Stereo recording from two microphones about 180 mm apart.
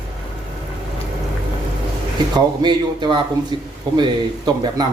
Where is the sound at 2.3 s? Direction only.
25° right (ahead or behind).